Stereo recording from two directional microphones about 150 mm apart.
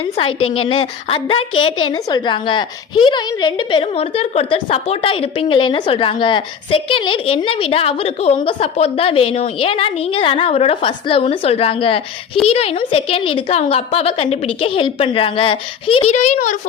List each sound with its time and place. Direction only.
0.0 s a woman's voice: 40° left (ahead or behind)